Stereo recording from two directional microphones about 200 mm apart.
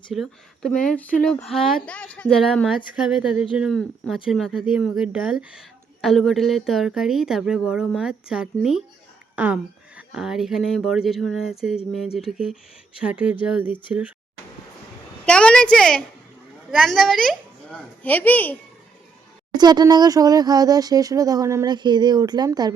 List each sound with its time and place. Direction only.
0.1 s speech: centre (ahead or behind)
15.3 s a woman's voice: 5° left (ahead or behind)
19.5 s speech: 20° right (ahead or behind)